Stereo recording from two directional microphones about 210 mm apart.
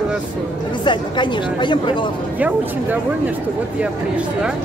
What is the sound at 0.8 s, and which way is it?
Speech, 20° left (ahead or behind).